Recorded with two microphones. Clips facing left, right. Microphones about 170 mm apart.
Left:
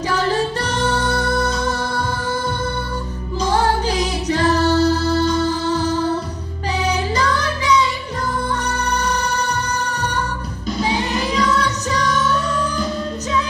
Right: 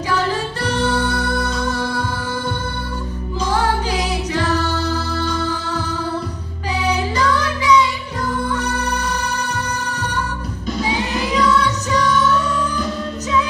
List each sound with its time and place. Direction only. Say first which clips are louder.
0.6 s music: right 1 dB; 40° left (ahead or behind)
3.3 s music: left 2 dB; 40° left (ahead or behind)
6.8 s music: right 1 dB; 40° left (ahead or behind)
11.3 s music: right 4 dB; 40° left (ahead or behind)